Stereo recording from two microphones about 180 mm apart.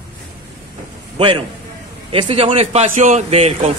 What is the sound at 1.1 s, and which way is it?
A man's voice, 30° right (ahead or behind).